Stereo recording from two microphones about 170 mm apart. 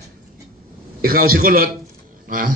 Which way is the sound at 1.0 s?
60° right (ahead or behind).